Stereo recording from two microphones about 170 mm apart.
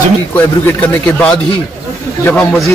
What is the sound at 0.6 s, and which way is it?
A man's voice, 10° left (ahead or behind).